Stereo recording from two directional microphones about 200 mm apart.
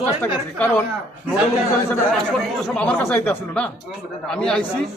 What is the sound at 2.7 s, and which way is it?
Speech, 5° left (ahead or behind).